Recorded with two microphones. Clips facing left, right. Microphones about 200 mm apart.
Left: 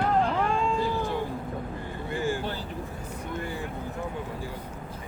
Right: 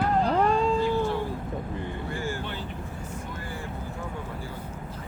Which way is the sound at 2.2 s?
15° left (ahead or behind).